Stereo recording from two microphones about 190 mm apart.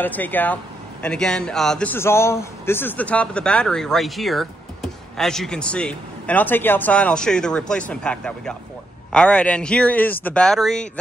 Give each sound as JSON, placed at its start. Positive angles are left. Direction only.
{"t": 0.0, "sound": "a man's voice", "side_deg": 10}